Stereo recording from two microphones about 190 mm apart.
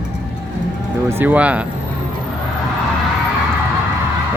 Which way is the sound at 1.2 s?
10° right (ahead or behind).